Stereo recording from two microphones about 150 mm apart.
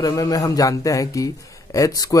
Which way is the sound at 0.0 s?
25° left (ahead or behind).